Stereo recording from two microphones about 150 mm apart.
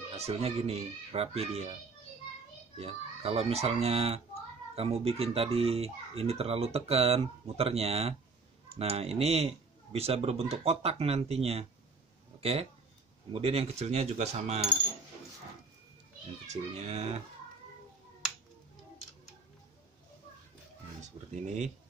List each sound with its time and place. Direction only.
0.1 s speech: 45° right (ahead or behind)
2.8 s speech: 40° right (ahead or behind)
16.4 s speech: 50° right (ahead or behind)
21.0 s a sound: 50° right (ahead or behind)